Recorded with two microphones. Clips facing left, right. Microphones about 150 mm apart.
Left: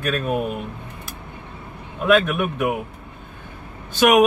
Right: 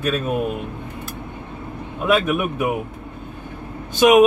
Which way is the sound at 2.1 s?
10° right (ahead or behind).